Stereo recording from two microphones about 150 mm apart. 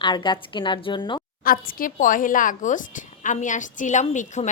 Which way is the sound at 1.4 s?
75° left (ahead or behind).